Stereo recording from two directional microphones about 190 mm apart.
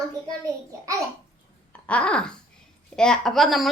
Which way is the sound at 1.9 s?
5° left (ahead or behind).